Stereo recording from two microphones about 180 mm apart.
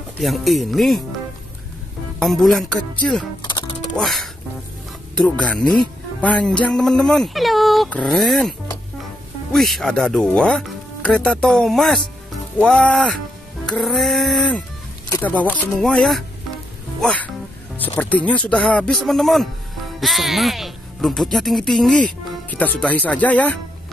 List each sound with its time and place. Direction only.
0.2 s speech: centre (ahead or behind)
2.1 s speech: centre (ahead or behind)
3.4 s music: 25° left (ahead or behind)
3.9 s speech: centre (ahead or behind)